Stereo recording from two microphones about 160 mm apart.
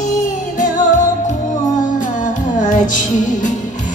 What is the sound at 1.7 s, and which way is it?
Music, 50° left (ahead or behind).